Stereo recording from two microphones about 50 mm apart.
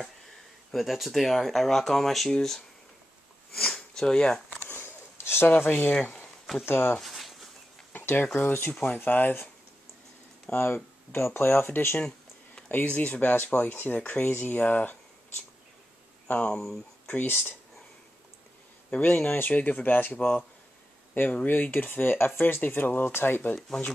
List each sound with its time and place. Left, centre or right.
0.7 s speech: centre
3.7 s speech: centre
4.5 s a sound: left
5.6 s speech: left
7.0 s a sound: centre
7.9 s speech: left
10.5 s speech: left
11.1 s speech: left
12.6 s speech: left
13.9 s speech: left
16.6 s a sound: centre
17.1 s speech: left
18.9 s speech: left